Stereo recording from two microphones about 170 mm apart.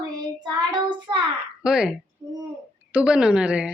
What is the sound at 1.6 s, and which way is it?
Speech, 5° right (ahead or behind).